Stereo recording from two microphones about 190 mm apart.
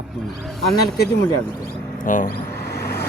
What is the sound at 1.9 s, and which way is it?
Speech, 45° left (ahead or behind).